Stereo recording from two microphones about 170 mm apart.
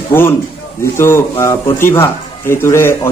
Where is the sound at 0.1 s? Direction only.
15° left (ahead or behind).